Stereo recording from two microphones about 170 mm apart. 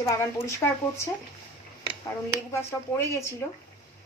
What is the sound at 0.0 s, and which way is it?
Speech, 15° left (ahead or behind).